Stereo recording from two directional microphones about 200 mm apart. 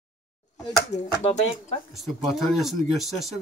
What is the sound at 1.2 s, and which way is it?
Speech, 35° left (ahead or behind).